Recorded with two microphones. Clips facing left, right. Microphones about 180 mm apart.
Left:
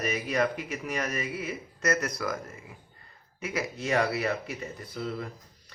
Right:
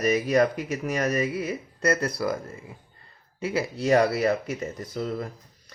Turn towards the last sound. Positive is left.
turn(degrees=-45)  # may be behind; listen again after turning